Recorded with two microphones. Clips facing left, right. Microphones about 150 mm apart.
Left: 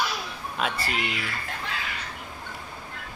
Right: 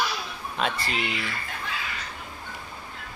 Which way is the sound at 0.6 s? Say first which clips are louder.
Right 1 dB; 10° left (ahead or behind).